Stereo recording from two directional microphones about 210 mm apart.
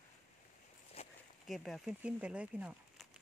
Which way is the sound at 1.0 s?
30° left (ahead or behind).